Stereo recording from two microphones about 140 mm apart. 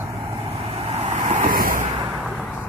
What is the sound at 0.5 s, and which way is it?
Vehicle, 40° right (ahead or behind).